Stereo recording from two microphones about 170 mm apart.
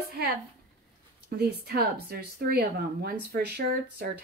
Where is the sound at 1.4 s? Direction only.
70° right (ahead or behind).